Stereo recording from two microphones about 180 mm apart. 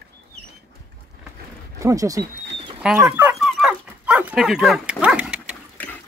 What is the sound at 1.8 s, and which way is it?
Speech, 20° right (ahead or behind).